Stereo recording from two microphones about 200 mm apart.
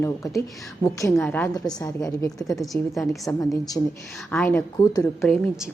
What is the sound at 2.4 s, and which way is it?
Speech, centre (ahead or behind).